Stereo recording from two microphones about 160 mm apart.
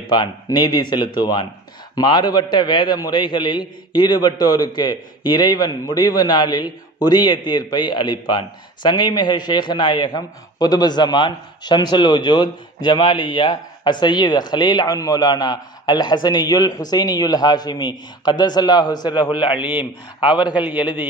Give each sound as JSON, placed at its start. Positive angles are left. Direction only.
{"t": 0.1, "sound": "a man's voice", "side_deg": 25}
{"t": 19.5, "sound": "a man's voice", "side_deg": -10}
{"t": 20.2, "sound": "a man's voice", "side_deg": 30}